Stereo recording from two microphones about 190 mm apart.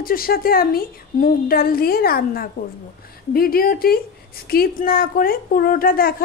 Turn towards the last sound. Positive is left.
turn(degrees=50)  # may be behind; listen again after turning